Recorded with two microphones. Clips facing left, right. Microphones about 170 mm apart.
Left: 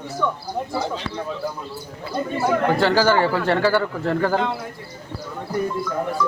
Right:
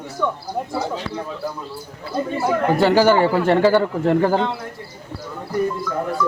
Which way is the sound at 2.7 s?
15° right (ahead or behind).